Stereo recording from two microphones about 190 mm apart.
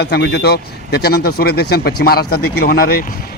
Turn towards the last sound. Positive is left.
turn(degrees=50)  # may be behind; listen again after turning